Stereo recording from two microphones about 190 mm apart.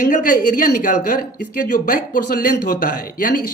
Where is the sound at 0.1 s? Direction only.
45° left (ahead or behind).